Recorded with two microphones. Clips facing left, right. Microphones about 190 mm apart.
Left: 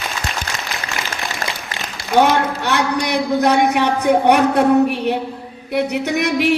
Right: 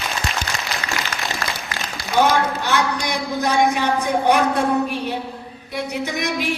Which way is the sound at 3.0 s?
65° left (ahead or behind).